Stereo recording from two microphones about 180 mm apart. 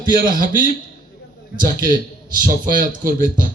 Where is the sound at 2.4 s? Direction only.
50° right (ahead or behind).